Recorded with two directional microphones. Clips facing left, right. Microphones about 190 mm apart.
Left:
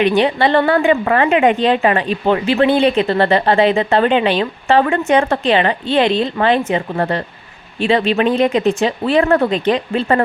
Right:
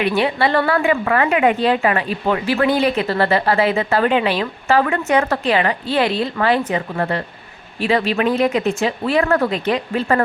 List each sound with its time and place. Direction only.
0.0 s speech: 25° left (ahead or behind)